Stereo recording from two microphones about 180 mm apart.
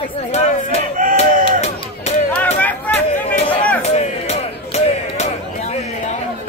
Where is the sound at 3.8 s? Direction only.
40° left (ahead or behind).